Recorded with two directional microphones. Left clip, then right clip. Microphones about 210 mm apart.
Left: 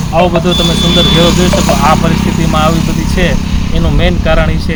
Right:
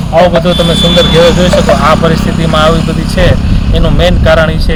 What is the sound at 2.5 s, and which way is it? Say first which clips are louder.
Speech: right 4 dB; 15° right (ahead or behind).